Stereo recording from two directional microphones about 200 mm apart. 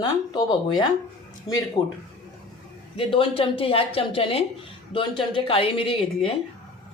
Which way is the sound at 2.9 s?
25° left (ahead or behind).